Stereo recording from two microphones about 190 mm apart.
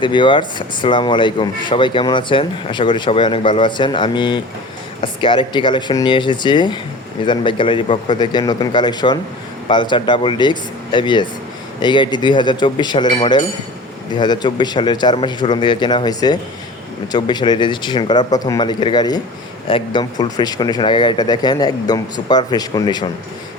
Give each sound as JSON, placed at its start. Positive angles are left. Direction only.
{"t": 0.0, "sound": "speech", "side_deg": 25}